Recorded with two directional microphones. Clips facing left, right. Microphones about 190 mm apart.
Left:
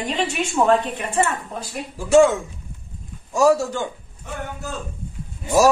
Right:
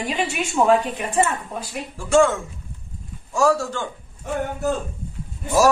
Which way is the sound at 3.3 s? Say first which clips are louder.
Left 3 dB; 15° left (ahead or behind).